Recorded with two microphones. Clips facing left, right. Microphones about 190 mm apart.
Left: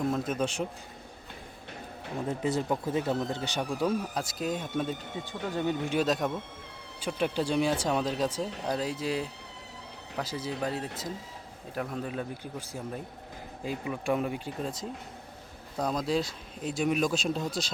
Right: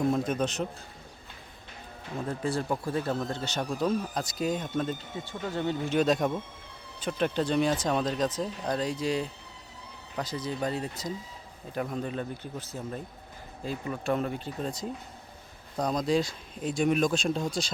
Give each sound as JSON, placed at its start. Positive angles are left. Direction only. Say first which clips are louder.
{"t": 0.1, "sound": "speech", "louder": "right 2 dB", "side_deg": 5}
{"t": 2.2, "sound": "a man's voice", "louder": "left 1 dB", "side_deg": 20}